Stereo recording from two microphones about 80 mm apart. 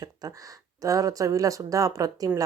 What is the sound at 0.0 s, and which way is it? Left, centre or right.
Speech, right.